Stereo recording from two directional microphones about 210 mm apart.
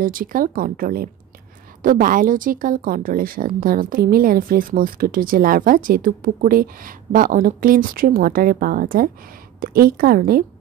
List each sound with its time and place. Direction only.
0.0 s speech: 40° right (ahead or behind)